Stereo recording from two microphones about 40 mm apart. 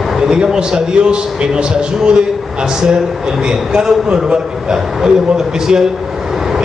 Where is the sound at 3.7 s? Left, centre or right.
Centre.